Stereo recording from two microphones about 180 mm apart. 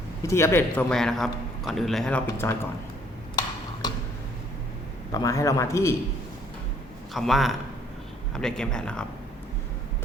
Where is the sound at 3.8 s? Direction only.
20° left (ahead or behind).